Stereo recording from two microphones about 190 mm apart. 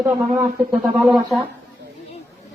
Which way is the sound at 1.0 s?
5° right (ahead or behind).